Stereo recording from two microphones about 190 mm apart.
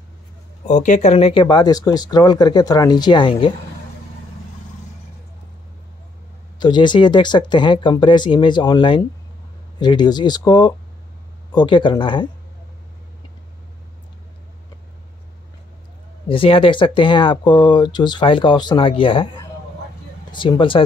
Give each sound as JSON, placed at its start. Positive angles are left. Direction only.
{"t": 0.7, "sound": "speech", "side_deg": 40}
{"t": 6.6, "sound": "speech", "side_deg": 25}
{"t": 16.3, "sound": "speech", "side_deg": 25}